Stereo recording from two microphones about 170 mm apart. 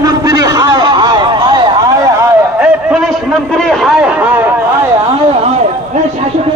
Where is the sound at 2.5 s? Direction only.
5° right (ahead or behind).